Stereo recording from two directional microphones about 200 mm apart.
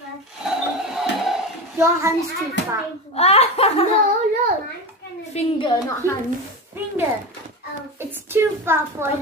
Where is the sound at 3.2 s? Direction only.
30° left (ahead or behind).